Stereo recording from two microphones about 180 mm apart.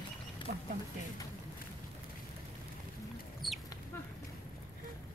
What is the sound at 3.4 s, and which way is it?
Chicken, centre (ahead or behind).